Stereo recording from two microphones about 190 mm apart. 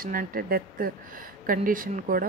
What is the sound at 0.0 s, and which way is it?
A woman's voice, 50° right (ahead or behind).